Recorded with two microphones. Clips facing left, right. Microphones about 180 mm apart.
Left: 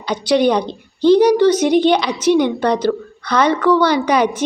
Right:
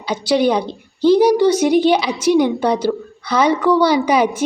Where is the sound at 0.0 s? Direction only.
10° right (ahead or behind).